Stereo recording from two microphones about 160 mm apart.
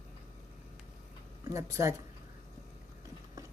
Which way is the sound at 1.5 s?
20° right (ahead or behind).